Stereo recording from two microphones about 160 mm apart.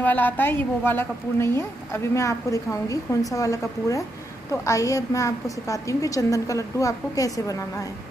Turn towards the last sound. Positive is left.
turn(degrees=20)  # may be behind; listen again after turning